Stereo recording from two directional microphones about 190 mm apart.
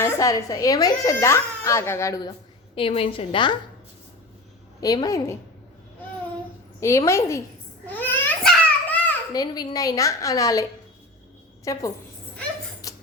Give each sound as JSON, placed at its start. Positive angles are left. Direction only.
{"t": 0.0, "sound": "speech", "side_deg": 15}
{"t": 2.7, "sound": "a woman's voice", "side_deg": 30}
{"t": 4.8, "sound": "a woman's voice", "side_deg": 20}
{"t": 6.7, "sound": "speech", "side_deg": 15}
{"t": 7.9, "sound": "babbling", "side_deg": 10}
{"t": 9.3, "sound": "a woman's voice", "side_deg": 20}
{"t": 12.8, "sound": "a sound", "side_deg": 20}